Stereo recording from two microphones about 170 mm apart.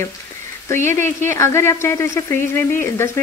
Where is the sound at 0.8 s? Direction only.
15° left (ahead or behind).